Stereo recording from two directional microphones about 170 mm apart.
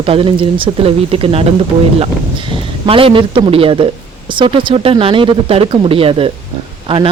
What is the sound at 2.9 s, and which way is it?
Speech, 30° right (ahead or behind).